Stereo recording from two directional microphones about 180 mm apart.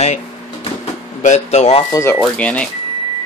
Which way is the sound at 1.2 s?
40° left (ahead or behind).